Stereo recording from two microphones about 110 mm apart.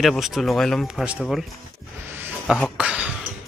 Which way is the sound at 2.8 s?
10° right (ahead or behind).